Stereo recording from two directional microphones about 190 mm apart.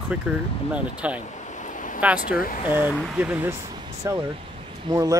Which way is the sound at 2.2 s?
50° left (ahead or behind).